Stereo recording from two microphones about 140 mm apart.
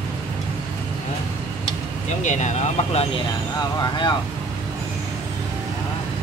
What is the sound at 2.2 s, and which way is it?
Speech, 55° left (ahead or behind).